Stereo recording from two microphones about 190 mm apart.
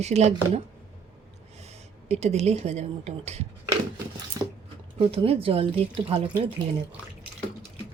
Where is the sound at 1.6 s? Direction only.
35° right (ahead or behind).